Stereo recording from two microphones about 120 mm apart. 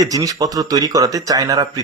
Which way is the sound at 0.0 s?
30° right (ahead or behind).